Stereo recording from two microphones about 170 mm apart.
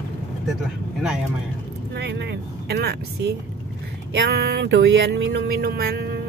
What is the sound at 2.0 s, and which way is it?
Speech, 85° right.